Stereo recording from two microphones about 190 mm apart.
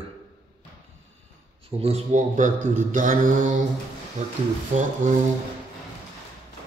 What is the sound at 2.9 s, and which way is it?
Mantra, 45° right (ahead or behind).